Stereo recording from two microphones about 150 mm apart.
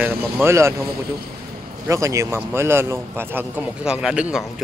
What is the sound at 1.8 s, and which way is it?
Speech, 20° right (ahead or behind).